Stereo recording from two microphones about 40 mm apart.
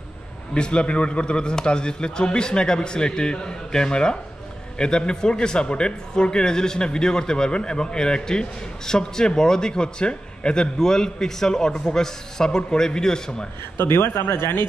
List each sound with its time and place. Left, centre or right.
0.6 s a man's voice: left
13.7 s speech: left